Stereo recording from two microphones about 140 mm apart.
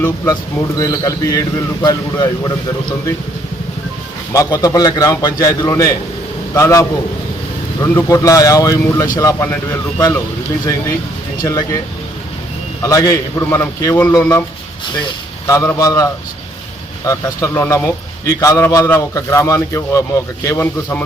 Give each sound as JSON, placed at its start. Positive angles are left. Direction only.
{"t": 0.8, "sound": "speech", "side_deg": 25}
{"t": 4.3, "sound": "speech", "side_deg": 25}
{"t": 11.4, "sound": "speech", "side_deg": 20}
{"t": 12.8, "sound": "speech", "side_deg": 25}
{"t": 15.5, "sound": "speech", "side_deg": 20}
{"t": 17.1, "sound": "speech", "side_deg": 20}